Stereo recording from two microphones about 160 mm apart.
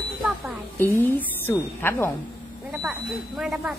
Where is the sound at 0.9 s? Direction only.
15° left (ahead or behind).